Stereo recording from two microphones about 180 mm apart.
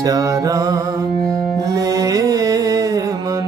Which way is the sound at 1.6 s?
20° right (ahead or behind).